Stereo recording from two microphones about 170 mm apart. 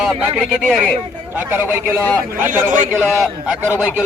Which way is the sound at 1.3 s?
10° right (ahead or behind).